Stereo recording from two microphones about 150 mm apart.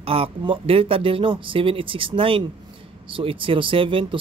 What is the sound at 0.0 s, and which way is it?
Speech, 40° right (ahead or behind).